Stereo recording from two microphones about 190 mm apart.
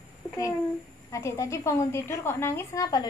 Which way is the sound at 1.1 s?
15° left (ahead or behind).